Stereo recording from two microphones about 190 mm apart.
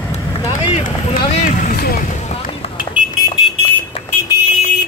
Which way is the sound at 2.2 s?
35° left (ahead or behind).